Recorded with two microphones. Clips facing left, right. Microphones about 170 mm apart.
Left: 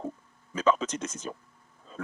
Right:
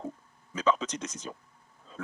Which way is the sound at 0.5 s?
50° left (ahead or behind).